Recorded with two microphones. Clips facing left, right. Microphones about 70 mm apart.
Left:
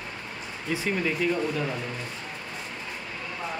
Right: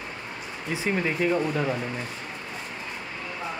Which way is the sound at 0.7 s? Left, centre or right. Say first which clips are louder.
Right 1 dB; right.